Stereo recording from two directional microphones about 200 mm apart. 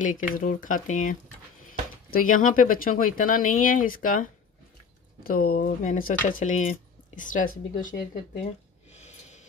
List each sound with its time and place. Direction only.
0.0 s speech: 40° left (ahead or behind)
8.9 s gasp: 35° left (ahead or behind)